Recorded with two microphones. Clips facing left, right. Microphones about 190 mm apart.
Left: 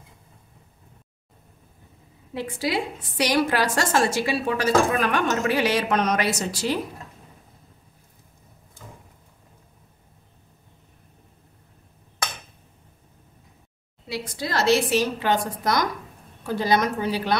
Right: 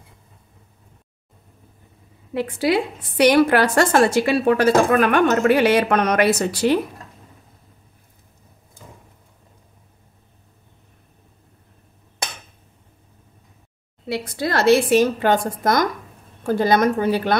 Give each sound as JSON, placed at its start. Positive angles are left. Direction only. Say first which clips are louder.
{"t": 2.3, "sound": "a woman's voice", "louder": "right 6 dB", "side_deg": -60}
{"t": 14.0, "sound": "a woman's voice", "louder": "right 6 dB", "side_deg": -60}